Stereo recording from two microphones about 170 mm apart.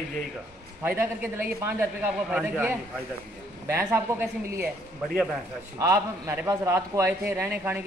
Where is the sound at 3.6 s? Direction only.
15° right (ahead or behind).